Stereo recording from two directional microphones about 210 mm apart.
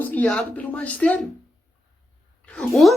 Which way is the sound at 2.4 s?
5° left (ahead or behind).